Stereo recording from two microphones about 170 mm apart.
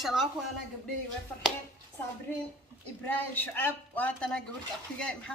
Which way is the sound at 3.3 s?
10° left (ahead or behind).